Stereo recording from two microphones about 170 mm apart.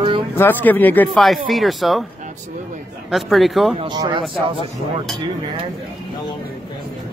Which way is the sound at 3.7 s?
25° right (ahead or behind).